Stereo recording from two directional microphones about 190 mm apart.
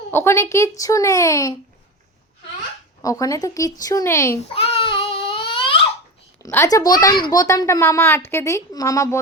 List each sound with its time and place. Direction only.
0.1 s a child's voice: 15° left (ahead or behind)
3.0 s a child's voice: 20° left (ahead or behind)
4.5 s child singing: 30° left (ahead or behind)
5.5 s a sound: 25° left (ahead or behind)
6.4 s a child's voice: 15° left (ahead or behind)